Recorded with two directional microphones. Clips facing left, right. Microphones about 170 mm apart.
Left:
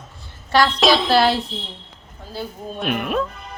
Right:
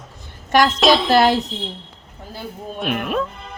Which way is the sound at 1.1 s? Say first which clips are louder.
Right 2 dB; 45° right (ahead or behind).